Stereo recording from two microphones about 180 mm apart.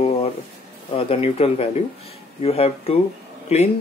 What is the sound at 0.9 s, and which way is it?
Speech, 30° left (ahead or behind).